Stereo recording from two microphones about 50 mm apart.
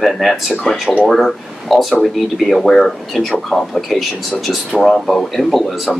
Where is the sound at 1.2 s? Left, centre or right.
Centre.